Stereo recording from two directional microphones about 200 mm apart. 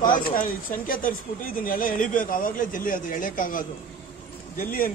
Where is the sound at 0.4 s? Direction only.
45° left (ahead or behind).